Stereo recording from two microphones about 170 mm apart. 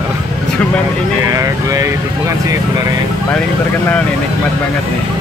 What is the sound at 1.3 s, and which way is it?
Speech, 20° right (ahead or behind).